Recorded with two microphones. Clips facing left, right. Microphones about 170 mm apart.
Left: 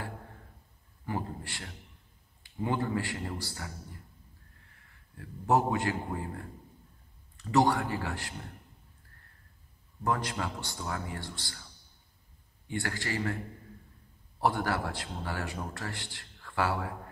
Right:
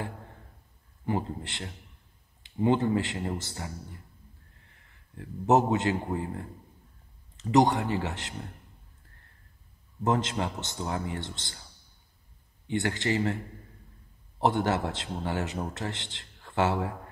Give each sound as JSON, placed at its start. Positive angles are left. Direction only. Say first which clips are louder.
{"t": 1.0, "sound": "speech", "louder": "right 5 dB", "side_deg": -20}
{"t": 5.1, "sound": "speech", "louder": "right 4 dB", "side_deg": -20}
{"t": 7.3, "sound": "speech", "louder": "right 3 dB", "side_deg": -20}
{"t": 10.0, "sound": "speech", "louder": "right 4 dB", "side_deg": -20}
{"t": 12.6, "sound": "speech", "louder": "right 6 dB", "side_deg": -20}
{"t": 14.4, "sound": "speech", "louder": "right 4 dB", "side_deg": -20}